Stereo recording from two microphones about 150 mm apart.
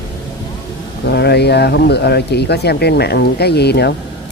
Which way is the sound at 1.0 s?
90° left.